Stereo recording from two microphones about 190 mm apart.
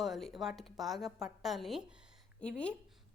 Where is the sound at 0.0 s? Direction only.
Centre (ahead or behind).